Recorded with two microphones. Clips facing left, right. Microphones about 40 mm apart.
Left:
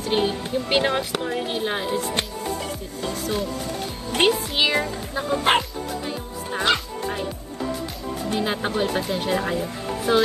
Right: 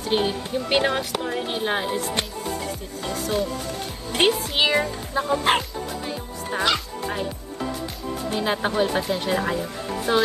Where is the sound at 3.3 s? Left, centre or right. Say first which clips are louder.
Right 3 dB; centre.